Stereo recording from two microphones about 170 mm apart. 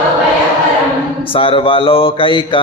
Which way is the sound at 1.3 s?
30° left (ahead or behind).